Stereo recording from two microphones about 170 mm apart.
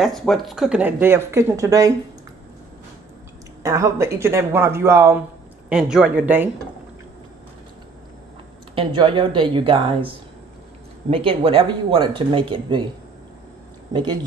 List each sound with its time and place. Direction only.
0.0 s speech: centre (ahead or behind); by 2.0 s 20° right (ahead or behind)
3.6 s speech: 20° right (ahead or behind)
5.7 s speech: 5° right (ahead or behind)
8.7 s speech: 30° right (ahead or behind)